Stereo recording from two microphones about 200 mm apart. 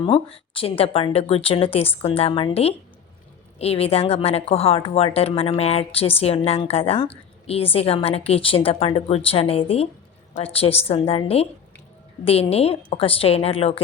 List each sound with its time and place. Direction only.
0.0 s a woman's voice: 25° left (ahead or behind)